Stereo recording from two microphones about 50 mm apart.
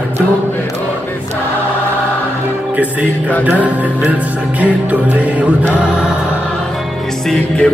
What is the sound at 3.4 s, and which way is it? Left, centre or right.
A man's voice, right.